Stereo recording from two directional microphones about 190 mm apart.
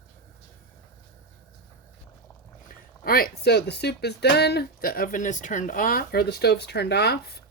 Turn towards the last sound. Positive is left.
turn(degrees=60)  # may be behind; listen again after turning